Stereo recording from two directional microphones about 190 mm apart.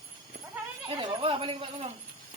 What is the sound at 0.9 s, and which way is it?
Speech, 25° right (ahead or behind).